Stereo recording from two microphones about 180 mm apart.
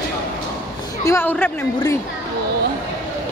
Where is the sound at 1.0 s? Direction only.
10° left (ahead or behind).